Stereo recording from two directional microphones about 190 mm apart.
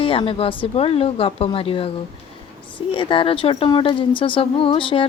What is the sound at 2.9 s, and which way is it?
Speech, 25° left (ahead or behind).